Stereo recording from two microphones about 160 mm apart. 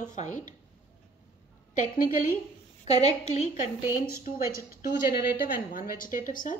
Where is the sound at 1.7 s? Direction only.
55° left (ahead or behind).